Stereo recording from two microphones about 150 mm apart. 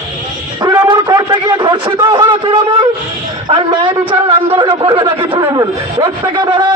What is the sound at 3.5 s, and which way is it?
A man's voice, 30° right (ahead or behind).